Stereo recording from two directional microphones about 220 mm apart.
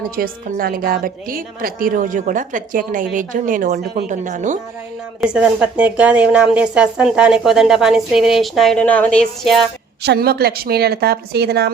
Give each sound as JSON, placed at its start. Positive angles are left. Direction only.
{"t": 0.2, "sound": "a woman's voice", "side_deg": -40}
{"t": 5.2, "sound": "speech", "side_deg": -5}
{"t": 10.0, "sound": "a woman's voice", "side_deg": -45}